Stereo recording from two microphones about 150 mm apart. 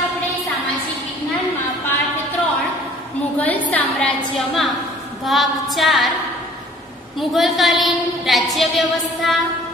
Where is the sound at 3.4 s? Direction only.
10° left (ahead or behind).